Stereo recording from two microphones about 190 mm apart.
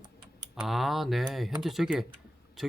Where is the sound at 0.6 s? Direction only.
Centre (ahead or behind).